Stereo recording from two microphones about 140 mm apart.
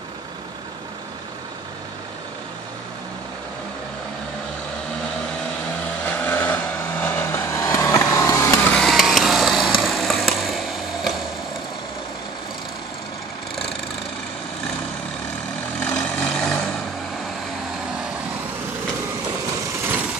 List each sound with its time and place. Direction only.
6.2 s vehicle: 10° left (ahead or behind)
8.7 s vehicle: centre (ahead or behind)
15.8 s vehicle: 5° left (ahead or behind)